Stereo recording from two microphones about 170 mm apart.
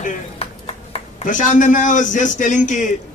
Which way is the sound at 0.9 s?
50° left (ahead or behind).